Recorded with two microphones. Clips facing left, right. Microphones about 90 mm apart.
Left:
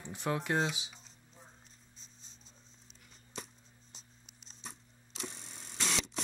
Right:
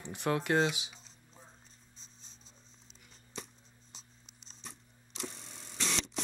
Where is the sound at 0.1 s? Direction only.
65° right (ahead or behind).